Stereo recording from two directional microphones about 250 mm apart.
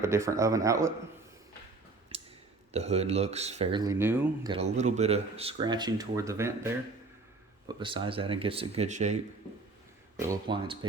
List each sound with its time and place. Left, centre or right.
0.0 s speech: centre
2.1 s a sound: right
2.7 s speech: right; by 4.5 s centre
4.5 s speech: right; by 6.7 s centre
7.8 s speech: centre
10.2 s speech: centre